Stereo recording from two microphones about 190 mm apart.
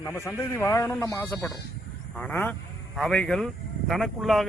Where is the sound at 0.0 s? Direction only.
15° left (ahead or behind).